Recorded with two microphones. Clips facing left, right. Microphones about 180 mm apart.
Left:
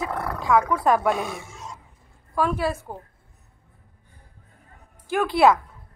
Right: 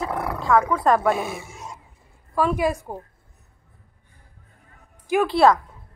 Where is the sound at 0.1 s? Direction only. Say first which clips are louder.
Right 2 dB; 5° right (ahead or behind).